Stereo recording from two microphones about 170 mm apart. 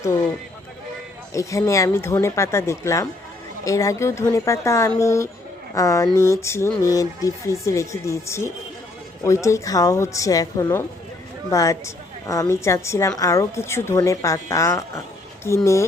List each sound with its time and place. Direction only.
1.3 s a woman's voice: 20° left (ahead or behind)